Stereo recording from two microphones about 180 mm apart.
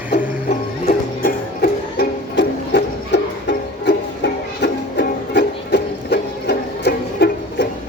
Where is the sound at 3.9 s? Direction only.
65° left (ahead or behind).